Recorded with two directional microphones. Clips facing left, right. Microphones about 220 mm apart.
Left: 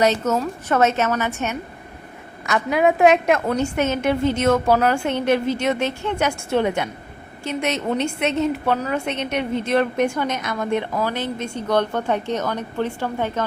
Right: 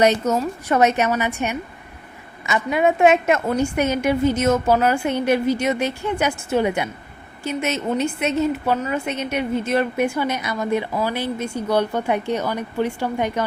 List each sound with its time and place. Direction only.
0.0 s a woman's voice: 15° right (ahead or behind)
2.5 s a woman's voice: centre (ahead or behind)